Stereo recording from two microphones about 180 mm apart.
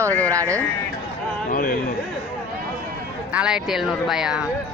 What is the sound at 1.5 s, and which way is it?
Speech, 50° left (ahead or behind).